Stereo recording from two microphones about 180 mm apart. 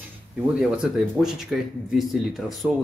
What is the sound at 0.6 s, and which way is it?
Speech, 5° right (ahead or behind).